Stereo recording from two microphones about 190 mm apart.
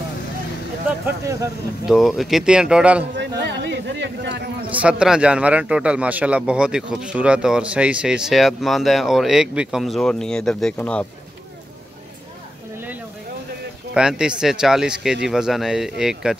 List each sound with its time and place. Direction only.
1.0 s speech: 15° right (ahead or behind)
1.9 s a man's voice: centre (ahead or behind)
3.2 s speech: 65° right (ahead or behind)
4.6 s a man's voice: 5° right (ahead or behind)
13.9 s a man's voice: 5° right (ahead or behind)